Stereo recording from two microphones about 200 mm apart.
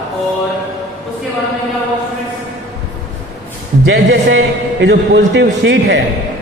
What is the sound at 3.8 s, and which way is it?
A man's voice, 65° right (ahead or behind).